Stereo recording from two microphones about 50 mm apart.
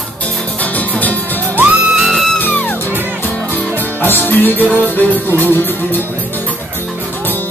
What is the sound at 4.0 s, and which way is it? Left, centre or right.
Music, left.